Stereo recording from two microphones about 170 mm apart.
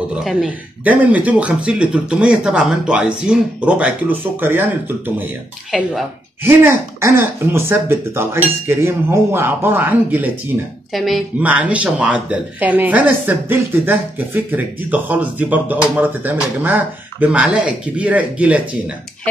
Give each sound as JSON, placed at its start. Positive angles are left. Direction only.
{"t": 0.1, "sound": "speech", "side_deg": 0}
{"t": 6.4, "sound": "speech", "side_deg": -15}